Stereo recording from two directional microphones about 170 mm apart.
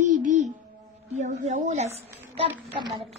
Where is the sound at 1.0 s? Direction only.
45° right (ahead or behind).